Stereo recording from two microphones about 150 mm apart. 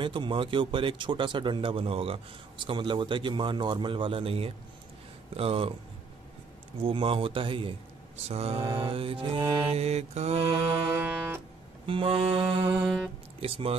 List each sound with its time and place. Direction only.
0.0 s a man's voice: 35° right (ahead or behind)
6.8 s a man's voice: 35° right (ahead or behind)
9.7 s mantra: 45° right (ahead or behind)
11.0 s music: 10° right (ahead or behind)
11.8 s a man's voice: 35° right (ahead or behind)
12.8 s speech: 5° right (ahead or behind)
13.4 s a man's voice: 40° right (ahead or behind)